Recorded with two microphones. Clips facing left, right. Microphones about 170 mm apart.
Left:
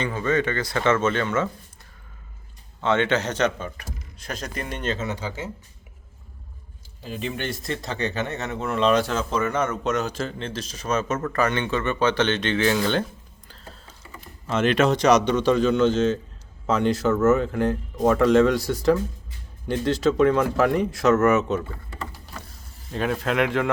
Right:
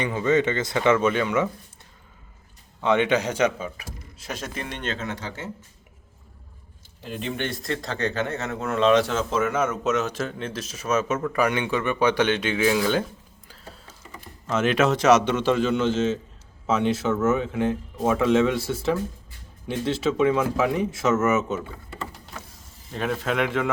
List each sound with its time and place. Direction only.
0.0 s speech: 20° right (ahead or behind)
2.8 s a man's voice: 15° right (ahead or behind); by 5.5 s centre (ahead or behind)
7.0 s a man's voice: centre (ahead or behind)
14.4 s a man's voice: centre (ahead or behind)
22.9 s a man's voice: centre (ahead or behind)